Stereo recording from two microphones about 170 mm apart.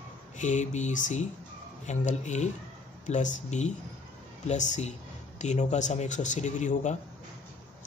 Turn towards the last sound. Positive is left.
turn(degrees=45)  # may be behind; listen again after turning